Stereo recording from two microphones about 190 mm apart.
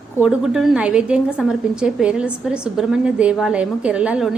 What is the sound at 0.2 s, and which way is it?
A woman's voice, 5° right (ahead or behind).